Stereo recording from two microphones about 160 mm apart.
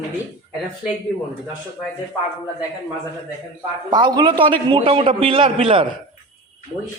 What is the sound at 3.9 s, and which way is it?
A man's voice, 25° right (ahead or behind).